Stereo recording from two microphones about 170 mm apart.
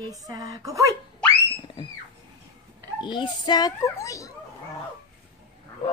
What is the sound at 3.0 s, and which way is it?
A child's voice, 25° left (ahead or behind).